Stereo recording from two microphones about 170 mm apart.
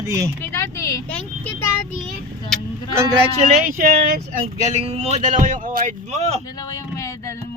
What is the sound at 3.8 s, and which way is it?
Speech, 55° right (ahead or behind).